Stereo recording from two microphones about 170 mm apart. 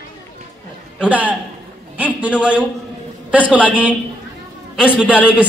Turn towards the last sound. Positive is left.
turn(degrees=-5)  # may be behind; listen again after turning